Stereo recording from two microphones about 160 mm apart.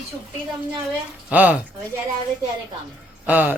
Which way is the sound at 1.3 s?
10° right (ahead or behind).